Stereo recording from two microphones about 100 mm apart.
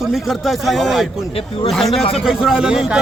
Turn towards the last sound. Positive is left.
turn(degrees=-5)  # may be behind; listen again after turning